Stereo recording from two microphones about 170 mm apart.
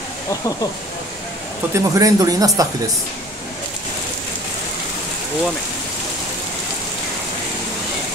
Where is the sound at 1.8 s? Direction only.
20° right (ahead or behind).